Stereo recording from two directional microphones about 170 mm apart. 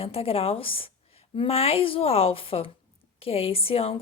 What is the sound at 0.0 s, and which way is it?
Speech, 35° left (ahead or behind).